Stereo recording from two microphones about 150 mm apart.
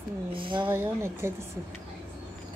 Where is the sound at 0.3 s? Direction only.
35° right (ahead or behind).